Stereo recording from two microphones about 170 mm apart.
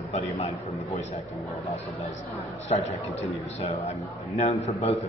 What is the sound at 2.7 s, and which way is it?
Speech, 40° left (ahead or behind).